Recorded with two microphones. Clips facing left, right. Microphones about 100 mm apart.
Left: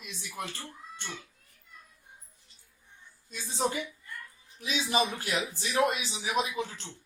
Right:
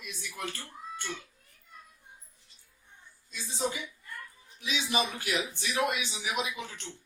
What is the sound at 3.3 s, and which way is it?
A woman's voice, 50° left (ahead or behind).